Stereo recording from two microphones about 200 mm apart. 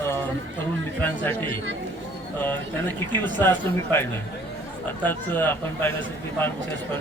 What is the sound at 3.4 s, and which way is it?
Speech, 10° left (ahead or behind).